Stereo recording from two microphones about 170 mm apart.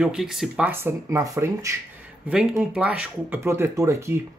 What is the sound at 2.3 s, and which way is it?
Speech, 5° right (ahead or behind).